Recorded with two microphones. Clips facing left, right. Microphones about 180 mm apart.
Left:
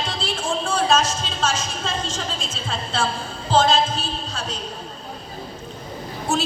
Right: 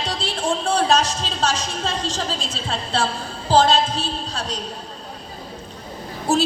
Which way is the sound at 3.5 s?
35° right (ahead or behind).